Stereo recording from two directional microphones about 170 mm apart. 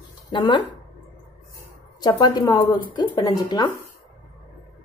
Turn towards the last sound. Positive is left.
turn(degrees=25)  # may be behind; listen again after turning